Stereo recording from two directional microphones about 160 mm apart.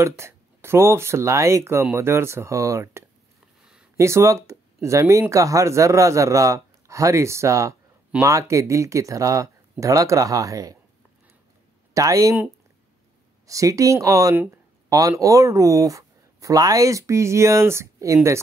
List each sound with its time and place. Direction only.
0.0 s speech: 15° right (ahead or behind)
11.9 s speech: 20° right (ahead or behind)
13.5 s speech: 20° right (ahead or behind)